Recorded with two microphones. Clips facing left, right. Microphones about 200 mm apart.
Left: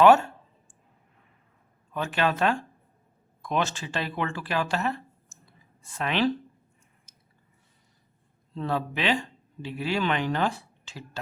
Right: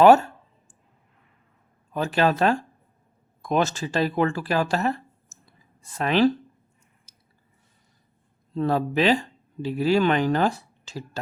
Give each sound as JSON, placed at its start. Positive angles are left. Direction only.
{"t": 0.0, "sound": "speech", "side_deg": -40}
{"t": 1.9, "sound": "speech", "side_deg": -35}
{"t": 7.1, "sound": "squish", "side_deg": -35}
{"t": 8.5, "sound": "speech", "side_deg": -40}